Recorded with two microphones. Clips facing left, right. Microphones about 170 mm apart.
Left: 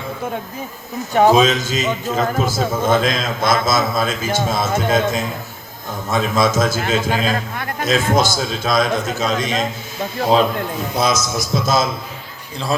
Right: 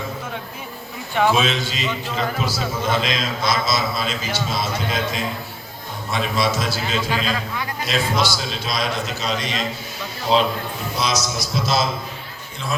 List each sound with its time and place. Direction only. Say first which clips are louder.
1.1 s a man's voice: left 6 dB; 40° left (ahead or behind)